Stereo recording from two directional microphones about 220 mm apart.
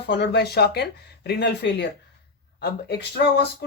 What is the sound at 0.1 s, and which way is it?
Speech, 50° left (ahead or behind).